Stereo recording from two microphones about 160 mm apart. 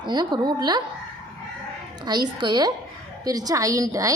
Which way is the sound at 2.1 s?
25° right (ahead or behind).